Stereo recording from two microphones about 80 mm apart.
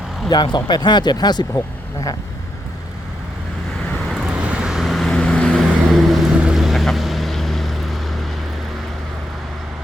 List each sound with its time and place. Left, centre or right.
0.3 s speech: left
1.5 s speech: left
4.4 s vehicle: centre
5.5 s vehicle: centre